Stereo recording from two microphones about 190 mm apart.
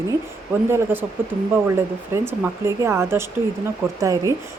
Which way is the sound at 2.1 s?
15° right (ahead or behind).